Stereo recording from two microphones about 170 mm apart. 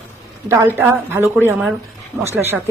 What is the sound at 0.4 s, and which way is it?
A woman's voice, 15° right (ahead or behind).